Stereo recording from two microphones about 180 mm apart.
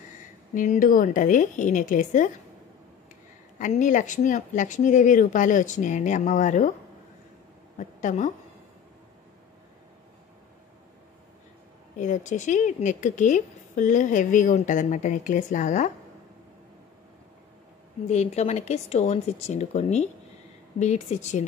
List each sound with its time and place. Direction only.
0.6 s a woman's voice: 50° left (ahead or behind)
3.5 s a woman's voice: 45° left (ahead or behind)
7.7 s a woman's voice: 45° left (ahead or behind)
12.0 s a woman's voice: 45° left (ahead or behind)
18.1 s speech: 35° left (ahead or behind)